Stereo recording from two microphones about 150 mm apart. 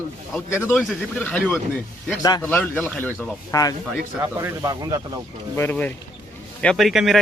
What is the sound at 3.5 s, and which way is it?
Speech, 25° left (ahead or behind).